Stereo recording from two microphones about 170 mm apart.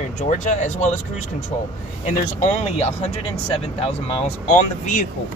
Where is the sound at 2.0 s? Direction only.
40° left (ahead or behind).